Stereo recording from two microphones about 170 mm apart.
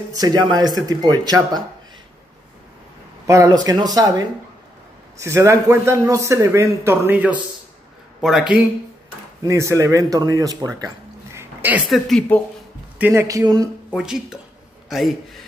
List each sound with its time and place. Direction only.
0.1 s speech: 25° right (ahead or behind)
3.3 s speech: 20° right (ahead or behind)
5.2 s a man's voice: 15° right (ahead or behind)
9.4 s speech: 20° right (ahead or behind)
11.3 s a sound: 10° right (ahead or behind)
11.9 s speech: 5° left (ahead or behind)
13.0 s a man's voice: 15° right (ahead or behind)
13.8 s a man's voice: 5° right (ahead or behind)